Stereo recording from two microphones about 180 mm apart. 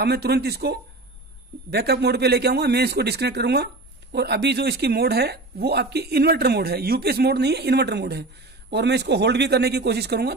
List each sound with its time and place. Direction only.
0.0 s a man's voice: 65° right (ahead or behind)